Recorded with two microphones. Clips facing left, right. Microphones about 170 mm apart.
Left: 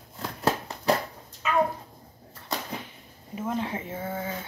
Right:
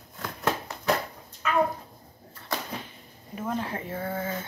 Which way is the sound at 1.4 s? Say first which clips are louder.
Even; 20° left (ahead or behind).